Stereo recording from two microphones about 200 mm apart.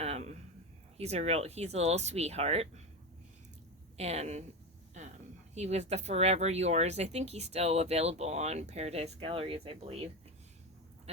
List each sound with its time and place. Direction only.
0.0 s a sound: 30° right (ahead or behind)
0.9 s speech: 30° right (ahead or behind)
3.9 s speech: 30° right (ahead or behind)
5.5 s speech: 35° right (ahead or behind)